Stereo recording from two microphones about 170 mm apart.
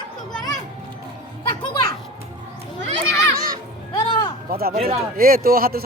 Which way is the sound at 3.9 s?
25° left (ahead or behind).